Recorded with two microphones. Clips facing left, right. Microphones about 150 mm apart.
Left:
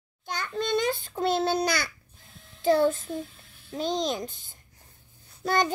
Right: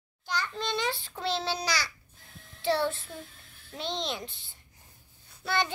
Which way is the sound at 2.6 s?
45° left (ahead or behind).